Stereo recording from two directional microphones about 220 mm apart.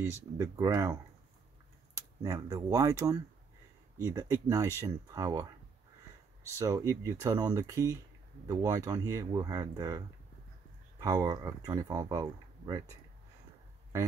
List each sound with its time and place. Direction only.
0.0 s speech: 10° right (ahead or behind)
2.0 s speech: 15° right (ahead or behind)
6.6 s speech: 15° right (ahead or behind)